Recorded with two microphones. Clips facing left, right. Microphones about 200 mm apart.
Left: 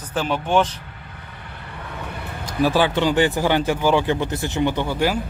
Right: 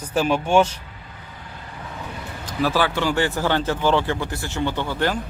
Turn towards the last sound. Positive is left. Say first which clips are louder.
# left 2 dB
turn(degrees=10)  # may be behind; listen again after turning